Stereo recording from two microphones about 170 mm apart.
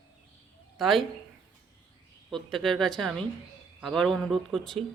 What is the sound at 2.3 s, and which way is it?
Speech, centre (ahead or behind).